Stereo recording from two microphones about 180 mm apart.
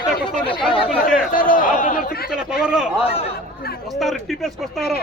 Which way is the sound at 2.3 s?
5° right (ahead or behind).